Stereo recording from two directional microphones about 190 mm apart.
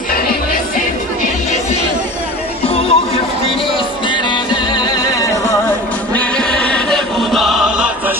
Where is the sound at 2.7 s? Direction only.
30° left (ahead or behind).